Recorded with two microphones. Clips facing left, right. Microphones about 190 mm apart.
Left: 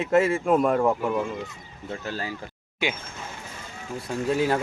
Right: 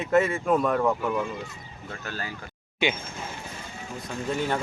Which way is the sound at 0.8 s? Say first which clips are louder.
Left 2 dB; 10° left (ahead or behind).